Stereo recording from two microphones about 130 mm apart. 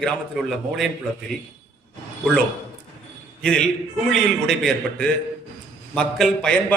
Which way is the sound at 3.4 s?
5° left (ahead or behind).